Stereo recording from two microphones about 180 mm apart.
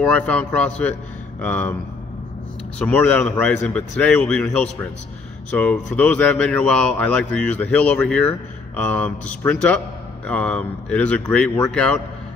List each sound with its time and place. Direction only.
0.1 s speech: 5° left (ahead or behind)
2.8 s speech: 5° left (ahead or behind)